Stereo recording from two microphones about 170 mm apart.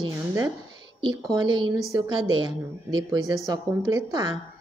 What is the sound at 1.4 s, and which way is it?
A woman's voice, 25° right (ahead or behind).